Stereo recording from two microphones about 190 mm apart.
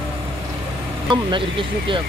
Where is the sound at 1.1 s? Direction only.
25° right (ahead or behind).